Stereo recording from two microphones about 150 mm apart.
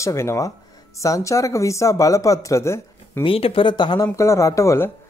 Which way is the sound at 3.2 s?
35° left (ahead or behind).